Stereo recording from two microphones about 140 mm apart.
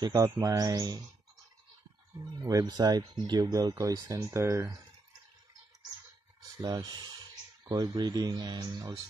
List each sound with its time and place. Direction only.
0.0 s speech: 25° right (ahead or behind)
2.3 s speech: 30° right (ahead or behind)
6.6 s speech: 30° right (ahead or behind)